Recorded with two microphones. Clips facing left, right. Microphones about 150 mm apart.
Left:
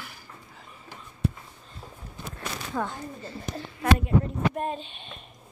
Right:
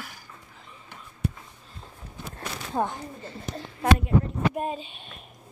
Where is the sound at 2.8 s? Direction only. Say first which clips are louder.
Right 5 dB; 20° right (ahead or behind).